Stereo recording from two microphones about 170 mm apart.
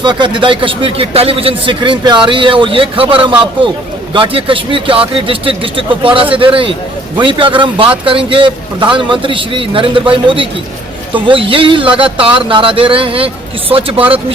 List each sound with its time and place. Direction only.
0.0 s a man's voice: 25° right (ahead or behind)